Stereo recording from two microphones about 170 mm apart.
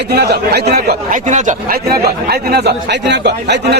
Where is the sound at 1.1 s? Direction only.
45° right (ahead or behind).